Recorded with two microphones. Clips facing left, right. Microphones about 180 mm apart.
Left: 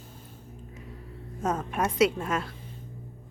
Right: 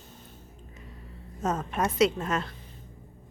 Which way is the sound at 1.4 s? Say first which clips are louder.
Even; 10° left (ahead or behind).